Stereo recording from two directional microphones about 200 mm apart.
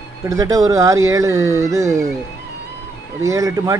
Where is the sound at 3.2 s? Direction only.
15° right (ahead or behind).